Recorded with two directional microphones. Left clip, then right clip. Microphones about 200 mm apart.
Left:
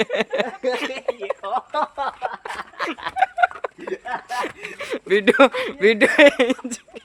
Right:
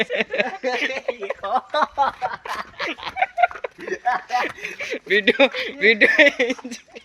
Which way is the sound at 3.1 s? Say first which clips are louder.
Left 1 dB; 15° left (ahead or behind).